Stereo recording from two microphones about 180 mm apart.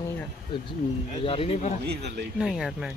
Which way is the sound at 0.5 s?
25° left (ahead or behind).